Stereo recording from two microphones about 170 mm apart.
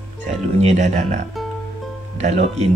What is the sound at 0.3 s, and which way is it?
Speech, 40° right (ahead or behind).